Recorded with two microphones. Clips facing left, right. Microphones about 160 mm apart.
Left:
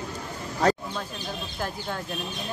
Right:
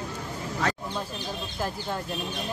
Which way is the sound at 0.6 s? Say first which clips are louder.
Left 7 dB; 35° left (ahead or behind).